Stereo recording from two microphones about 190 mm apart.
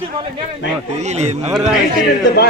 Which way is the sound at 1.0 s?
35° right (ahead or behind).